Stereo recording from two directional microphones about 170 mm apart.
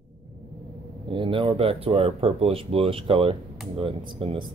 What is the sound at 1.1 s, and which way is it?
Speech, 30° right (ahead or behind).